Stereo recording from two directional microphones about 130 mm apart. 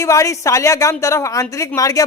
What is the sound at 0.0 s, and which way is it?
A woman's voice, 25° left (ahead or behind).